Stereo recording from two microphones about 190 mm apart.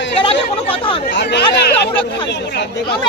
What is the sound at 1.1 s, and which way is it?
Speech, 65° left (ahead or behind).